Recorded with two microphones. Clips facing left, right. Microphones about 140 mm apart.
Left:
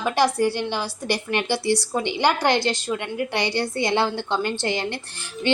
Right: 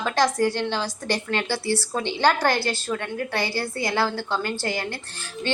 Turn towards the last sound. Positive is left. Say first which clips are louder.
# left 5 dB
turn(degrees=15)  # may be behind; listen again after turning